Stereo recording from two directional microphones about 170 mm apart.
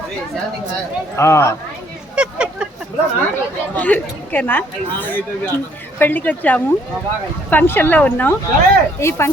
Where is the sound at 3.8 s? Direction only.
10° left (ahead or behind).